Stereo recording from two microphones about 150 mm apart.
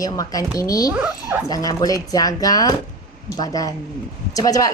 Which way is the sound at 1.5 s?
25° left (ahead or behind).